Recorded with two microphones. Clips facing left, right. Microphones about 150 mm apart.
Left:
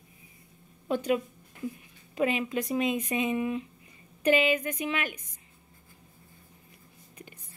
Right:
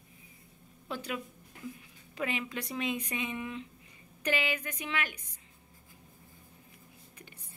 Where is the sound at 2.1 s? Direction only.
15° left (ahead or behind).